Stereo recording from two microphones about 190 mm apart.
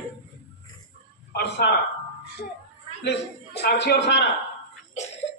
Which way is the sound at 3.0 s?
60° left (ahead or behind).